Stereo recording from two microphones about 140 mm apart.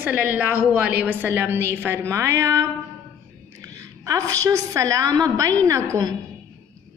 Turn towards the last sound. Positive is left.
turn(degrees=-25)  # may be behind; listen again after turning